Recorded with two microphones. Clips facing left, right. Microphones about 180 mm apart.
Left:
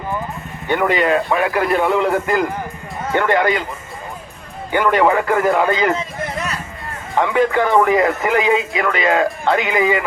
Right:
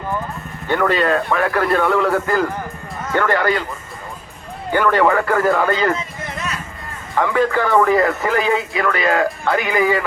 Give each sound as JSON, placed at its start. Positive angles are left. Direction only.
{"t": 0.7, "sound": "a man's voice", "side_deg": 15}
{"t": 4.7, "sound": "a man's voice", "side_deg": 20}
{"t": 7.2, "sound": "speech", "side_deg": 20}